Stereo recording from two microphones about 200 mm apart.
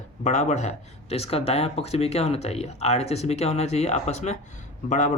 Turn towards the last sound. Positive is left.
turn(degrees=35)  # may be behind; listen again after turning